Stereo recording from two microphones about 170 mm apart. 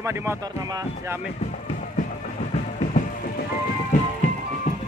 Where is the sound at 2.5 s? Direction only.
45° left (ahead or behind).